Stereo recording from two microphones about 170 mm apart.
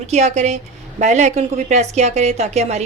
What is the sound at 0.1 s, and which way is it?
A woman's voice, 40° right (ahead or behind).